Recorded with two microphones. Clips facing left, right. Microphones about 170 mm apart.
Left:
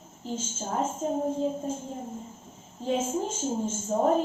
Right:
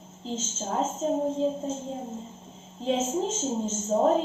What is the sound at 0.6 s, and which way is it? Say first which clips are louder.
Speech: right 1 dB; 30° right (ahead or behind).